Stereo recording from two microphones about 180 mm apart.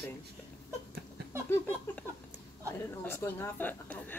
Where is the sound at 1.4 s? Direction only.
10° left (ahead or behind).